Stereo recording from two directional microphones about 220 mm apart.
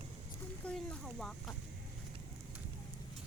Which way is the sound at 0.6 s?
5° left (ahead or behind).